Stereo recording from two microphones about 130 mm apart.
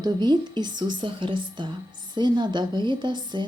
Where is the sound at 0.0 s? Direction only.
30° right (ahead or behind).